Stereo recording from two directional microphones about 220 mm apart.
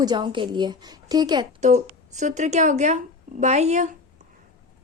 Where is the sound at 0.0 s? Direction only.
20° right (ahead or behind).